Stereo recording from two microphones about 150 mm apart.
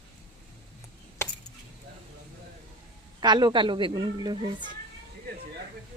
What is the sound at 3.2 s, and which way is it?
A woman's voice, 30° right (ahead or behind).